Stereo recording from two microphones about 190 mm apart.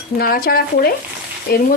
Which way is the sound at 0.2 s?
50° left (ahead or behind).